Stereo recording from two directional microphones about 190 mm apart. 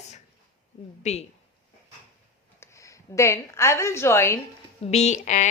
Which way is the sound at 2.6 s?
15° left (ahead or behind).